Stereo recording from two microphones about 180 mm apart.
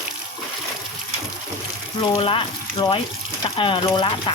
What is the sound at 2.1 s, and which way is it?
Speech, 30° left (ahead or behind).